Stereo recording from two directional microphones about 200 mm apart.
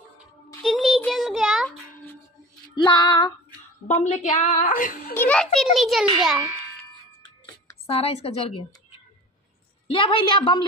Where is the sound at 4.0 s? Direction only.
35° left (ahead or behind).